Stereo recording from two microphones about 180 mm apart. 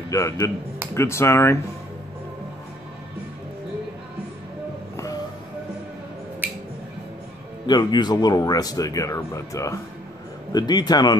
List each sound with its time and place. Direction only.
0.1 s speech: 15° left (ahead or behind)
6.4 s squish: 10° right (ahead or behind)
7.6 s speech: 25° left (ahead or behind)